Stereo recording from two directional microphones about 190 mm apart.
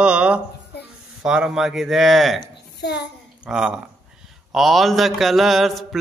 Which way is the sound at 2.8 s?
60° left (ahead or behind).